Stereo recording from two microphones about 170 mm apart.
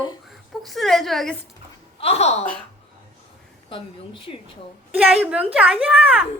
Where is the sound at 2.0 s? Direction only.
35° left (ahead or behind).